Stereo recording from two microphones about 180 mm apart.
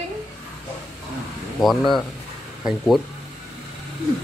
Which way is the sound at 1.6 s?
Centre (ahead or behind).